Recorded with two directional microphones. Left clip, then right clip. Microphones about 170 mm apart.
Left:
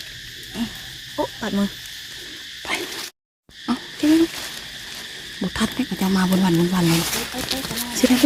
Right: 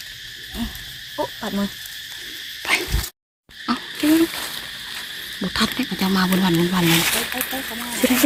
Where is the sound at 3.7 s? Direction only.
10° left (ahead or behind).